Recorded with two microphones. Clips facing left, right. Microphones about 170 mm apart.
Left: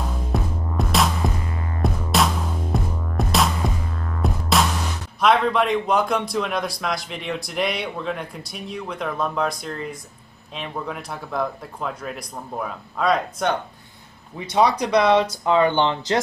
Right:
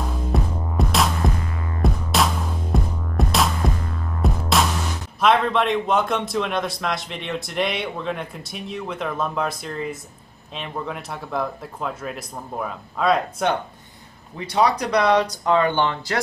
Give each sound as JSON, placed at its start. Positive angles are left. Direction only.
{"t": 0.3, "sound": "music", "side_deg": 0}
{"t": 5.2, "sound": "a man's voice", "side_deg": 0}
{"t": 14.5, "sound": "speech", "side_deg": 10}